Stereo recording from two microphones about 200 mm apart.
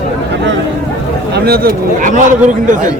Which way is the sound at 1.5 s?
50° right (ahead or behind).